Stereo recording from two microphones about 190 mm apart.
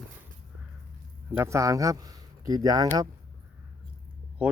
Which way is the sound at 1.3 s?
10° right (ahead or behind).